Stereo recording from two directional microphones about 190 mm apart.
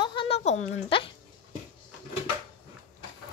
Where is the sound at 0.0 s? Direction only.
25° left (ahead or behind).